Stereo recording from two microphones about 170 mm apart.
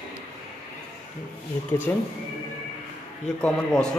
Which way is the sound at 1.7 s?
15° left (ahead or behind).